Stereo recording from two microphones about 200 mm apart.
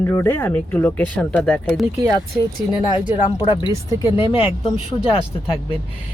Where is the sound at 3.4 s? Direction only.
25° left (ahead or behind).